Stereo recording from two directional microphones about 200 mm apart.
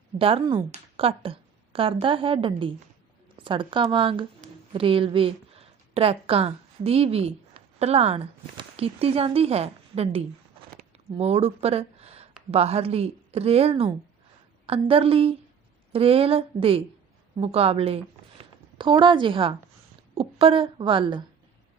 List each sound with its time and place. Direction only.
0.2 s a woman's voice: 25° right (ahead or behind)
10.8 s a sound: 30° right (ahead or behind)
12.5 s a woman's voice: 30° right (ahead or behind)